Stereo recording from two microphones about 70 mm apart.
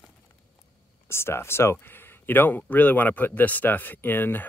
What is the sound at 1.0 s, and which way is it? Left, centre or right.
Speech, left.